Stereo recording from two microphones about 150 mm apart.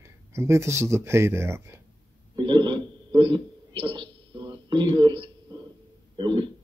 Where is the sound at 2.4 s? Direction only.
30° right (ahead or behind).